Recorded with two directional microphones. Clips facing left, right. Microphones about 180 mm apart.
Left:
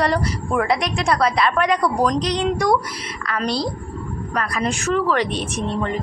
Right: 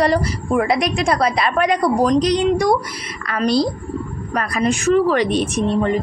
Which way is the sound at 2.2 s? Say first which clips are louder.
Right 4 dB; 10° right (ahead or behind).